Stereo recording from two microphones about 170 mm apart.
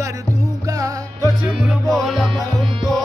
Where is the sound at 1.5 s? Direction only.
5° right (ahead or behind).